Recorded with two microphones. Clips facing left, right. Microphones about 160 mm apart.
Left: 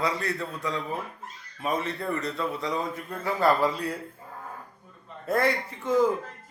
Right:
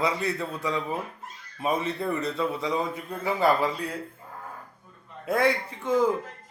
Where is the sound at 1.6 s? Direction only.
5° right (ahead or behind).